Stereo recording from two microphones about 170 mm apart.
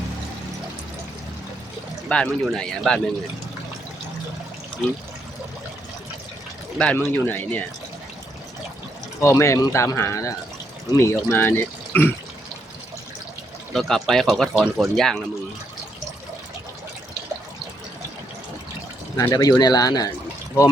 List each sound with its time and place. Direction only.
2.0 s speech: 5° left (ahead or behind)
6.7 s speech: 5° left (ahead or behind)
9.2 s speech: 15° left (ahead or behind)
13.7 s speech: centre (ahead or behind)
19.1 s speech: 20° left (ahead or behind)